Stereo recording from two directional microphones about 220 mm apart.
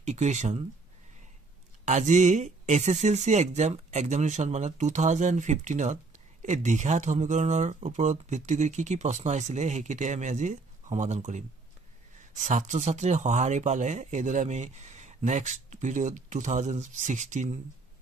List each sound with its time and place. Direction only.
0.0 s speech: 30° right (ahead or behind)
1.9 s speech: 35° right (ahead or behind)